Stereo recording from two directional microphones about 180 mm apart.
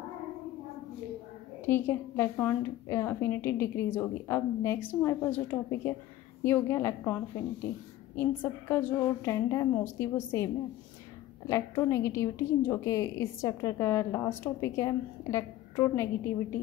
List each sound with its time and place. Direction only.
1.7 s a woman's voice: 10° left (ahead or behind)
8.2 s a woman's voice: 10° left (ahead or behind)